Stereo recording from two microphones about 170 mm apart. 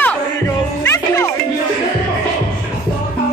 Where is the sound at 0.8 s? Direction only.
15° left (ahead or behind).